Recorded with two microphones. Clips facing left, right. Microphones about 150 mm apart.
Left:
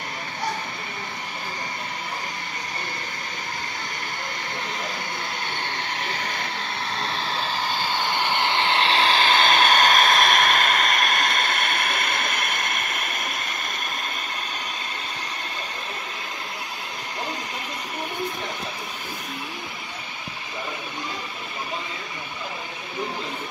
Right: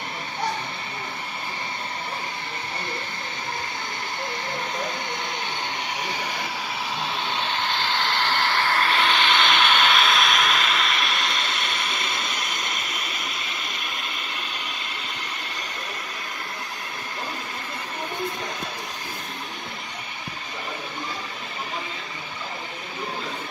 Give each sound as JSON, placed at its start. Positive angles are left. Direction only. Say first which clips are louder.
{"t": 5.9, "sound": "vehicle", "louder": "even", "side_deg": -15}
{"t": 6.9, "sound": "vehicle", "louder": "even", "side_deg": 0}